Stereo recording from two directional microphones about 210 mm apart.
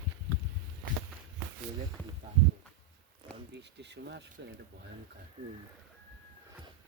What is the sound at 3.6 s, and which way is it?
Speech, 55° right (ahead or behind).